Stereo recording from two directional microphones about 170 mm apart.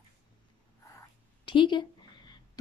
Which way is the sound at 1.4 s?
30° left (ahead or behind).